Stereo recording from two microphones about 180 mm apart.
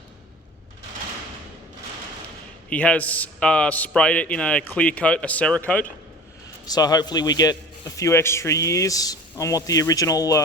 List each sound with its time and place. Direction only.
2.6 s a man's voice: 5° left (ahead or behind)
6.7 s a man's voice: 20° left (ahead or behind)